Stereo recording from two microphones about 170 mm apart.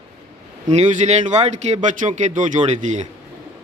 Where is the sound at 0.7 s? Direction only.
40° right (ahead or behind).